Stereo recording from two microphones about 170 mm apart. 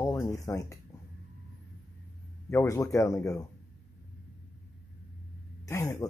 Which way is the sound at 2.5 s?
20° left (ahead or behind).